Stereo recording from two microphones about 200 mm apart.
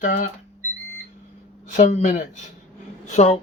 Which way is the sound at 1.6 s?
40° left (ahead or behind).